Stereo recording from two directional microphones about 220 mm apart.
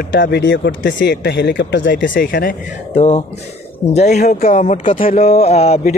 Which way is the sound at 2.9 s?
30° left (ahead or behind).